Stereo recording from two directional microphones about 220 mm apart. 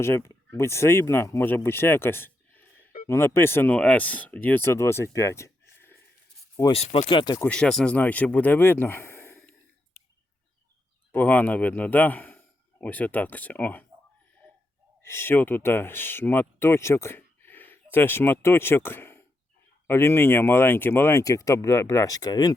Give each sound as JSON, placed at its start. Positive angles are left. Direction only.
{"t": 0.0, "sound": "speech", "side_deg": 10}
{"t": 6.6, "sound": "speech", "side_deg": 25}
{"t": 7.4, "sound": "speech", "side_deg": 5}
{"t": 11.1, "sound": "speech", "side_deg": 10}
{"t": 15.0, "sound": "speech", "side_deg": 10}